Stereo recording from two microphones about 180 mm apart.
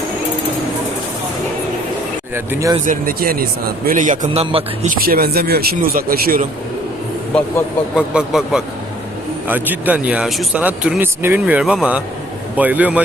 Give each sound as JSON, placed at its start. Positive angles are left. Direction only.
{"t": 2.3, "sound": "speech", "side_deg": -15}
{"t": 2.8, "sound": "speech", "side_deg": -50}
{"t": 4.4, "sound": "speech", "side_deg": -35}
{"t": 4.9, "sound": "speech", "side_deg": -55}
{"t": 7.9, "sound": "speech", "side_deg": -5}